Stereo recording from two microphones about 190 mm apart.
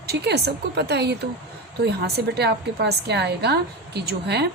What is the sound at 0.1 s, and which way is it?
A woman's voice, 60° right (ahead or behind).